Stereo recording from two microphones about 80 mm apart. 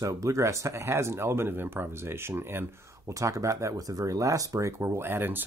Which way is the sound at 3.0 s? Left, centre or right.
Right.